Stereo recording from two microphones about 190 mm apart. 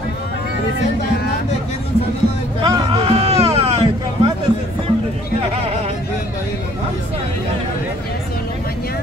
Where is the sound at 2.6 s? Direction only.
25° right (ahead or behind).